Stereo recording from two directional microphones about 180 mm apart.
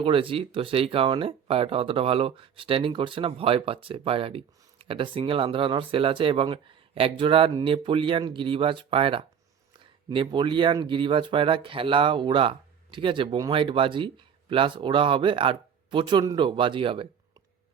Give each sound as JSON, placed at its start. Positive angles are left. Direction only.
{"t": 0.0, "sound": "speech", "side_deg": -30}